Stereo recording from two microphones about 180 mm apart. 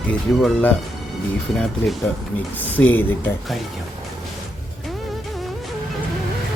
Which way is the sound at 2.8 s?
10° left (ahead or behind).